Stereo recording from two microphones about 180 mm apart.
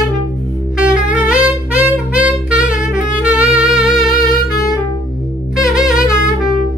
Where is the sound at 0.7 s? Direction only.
5° right (ahead or behind).